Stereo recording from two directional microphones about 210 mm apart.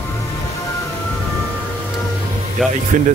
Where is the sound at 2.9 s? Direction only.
40° right (ahead or behind).